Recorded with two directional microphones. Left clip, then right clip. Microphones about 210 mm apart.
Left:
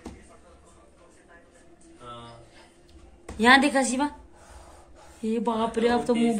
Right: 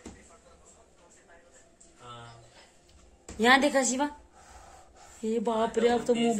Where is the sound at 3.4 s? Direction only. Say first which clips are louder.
Left 4 dB; 15° right (ahead or behind).